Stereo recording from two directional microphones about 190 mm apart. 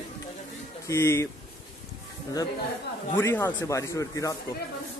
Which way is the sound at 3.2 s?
10° left (ahead or behind).